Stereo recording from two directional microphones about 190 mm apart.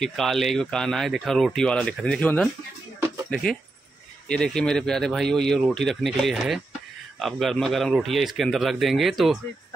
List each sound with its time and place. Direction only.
0.0 s speech: centre (ahead or behind)
4.3 s speech: 5° left (ahead or behind)